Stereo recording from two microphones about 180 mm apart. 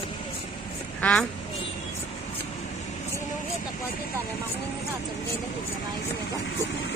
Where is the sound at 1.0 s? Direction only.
5° left (ahead or behind).